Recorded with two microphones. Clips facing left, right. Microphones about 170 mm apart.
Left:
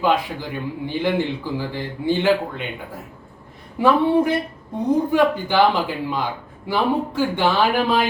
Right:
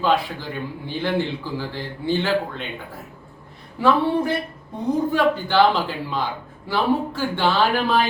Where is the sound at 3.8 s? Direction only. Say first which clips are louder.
Left 1 dB; 15° left (ahead or behind).